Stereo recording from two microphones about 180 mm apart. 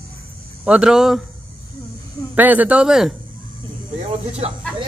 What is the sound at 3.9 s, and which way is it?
Speech, 35° right (ahead or behind).